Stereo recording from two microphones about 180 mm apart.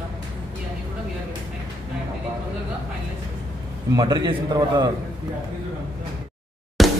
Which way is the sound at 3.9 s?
25° right (ahead or behind).